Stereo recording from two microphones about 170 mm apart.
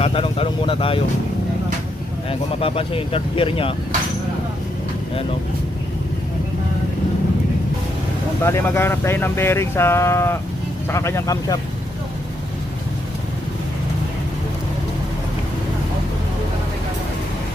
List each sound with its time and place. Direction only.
0.0 s speech: 35° left (ahead or behind)
2.6 s speech: 35° left (ahead or behind)
8.4 s speech: 15° left (ahead or behind)